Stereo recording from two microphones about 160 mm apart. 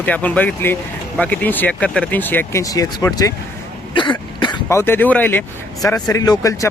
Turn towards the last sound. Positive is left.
turn(degrees=20)  # may be behind; listen again after turning